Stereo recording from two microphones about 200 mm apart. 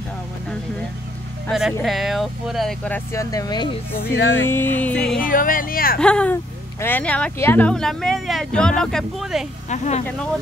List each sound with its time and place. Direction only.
1.5 s speech: centre (ahead or behind); by 3.7 s 20° left (ahead or behind)
4.0 s music: 55° left (ahead or behind)
4.4 s music: 10° left (ahead or behind)
5.2 s speech: 45° left (ahead or behind)
5.9 s speech: 5° left (ahead or behind)
9.7 s speech: 35° left (ahead or behind)
10.0 s speech: 5° left (ahead or behind)